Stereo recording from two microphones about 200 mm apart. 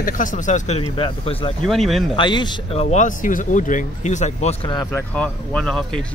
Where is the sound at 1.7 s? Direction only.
Centre (ahead or behind).